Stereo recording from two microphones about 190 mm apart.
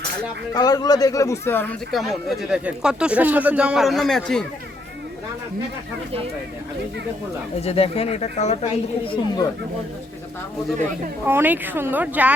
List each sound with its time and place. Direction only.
0.5 s a man's voice: 20° left (ahead or behind)
1.9 s speech: centre (ahead or behind)
7.6 s speech: 30° left (ahead or behind)
11.3 s speech: 10° right (ahead or behind)